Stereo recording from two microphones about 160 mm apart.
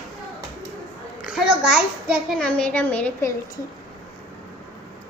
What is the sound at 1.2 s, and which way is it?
A child's voice, 5° right (ahead or behind).